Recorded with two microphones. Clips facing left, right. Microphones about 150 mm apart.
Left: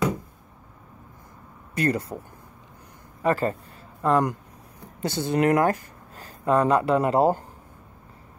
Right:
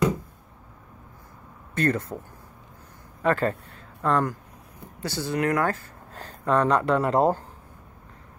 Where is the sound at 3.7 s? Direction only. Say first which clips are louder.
Left 2 dB; 5° left (ahead or behind).